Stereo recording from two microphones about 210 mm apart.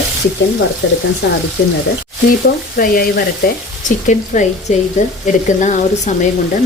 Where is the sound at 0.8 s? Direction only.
60° left (ahead or behind).